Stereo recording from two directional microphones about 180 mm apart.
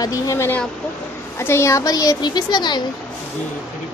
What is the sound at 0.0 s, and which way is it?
Speech, 20° left (ahead or behind).